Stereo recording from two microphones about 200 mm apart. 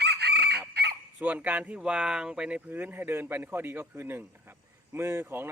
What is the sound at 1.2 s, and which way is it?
Speech, 10° right (ahead or behind).